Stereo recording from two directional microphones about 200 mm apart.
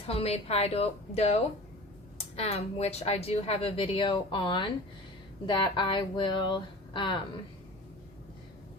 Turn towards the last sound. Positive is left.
turn(degrees=25)  # may be behind; listen again after turning